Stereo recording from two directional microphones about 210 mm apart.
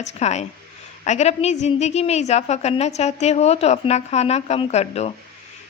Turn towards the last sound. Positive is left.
turn(degrees=30)  # may be behind; listen again after turning